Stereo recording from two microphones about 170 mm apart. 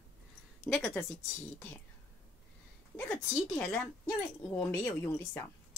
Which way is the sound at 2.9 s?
10° left (ahead or behind).